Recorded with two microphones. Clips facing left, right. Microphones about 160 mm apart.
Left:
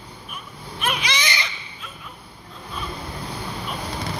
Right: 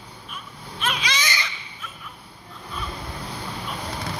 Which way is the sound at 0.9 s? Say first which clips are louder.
Left 2 dB; 60° left (ahead or behind).